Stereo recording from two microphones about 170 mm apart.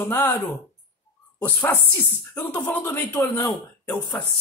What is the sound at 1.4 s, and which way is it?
Speech, 10° left (ahead or behind).